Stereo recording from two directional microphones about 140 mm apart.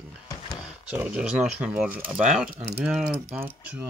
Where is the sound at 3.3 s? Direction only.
15° right (ahead or behind).